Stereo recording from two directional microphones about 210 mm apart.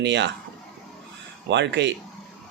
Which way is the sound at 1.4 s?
55° right (ahead or behind).